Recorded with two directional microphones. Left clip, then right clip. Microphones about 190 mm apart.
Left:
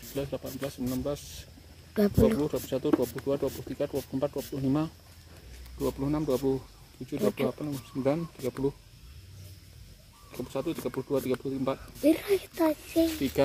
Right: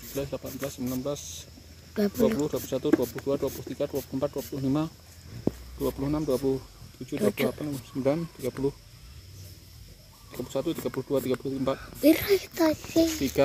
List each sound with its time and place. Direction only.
0.1 s speech: 10° left (ahead or behind)
7.1 s speech: 5° left (ahead or behind)
10.3 s speech: 5° right (ahead or behind)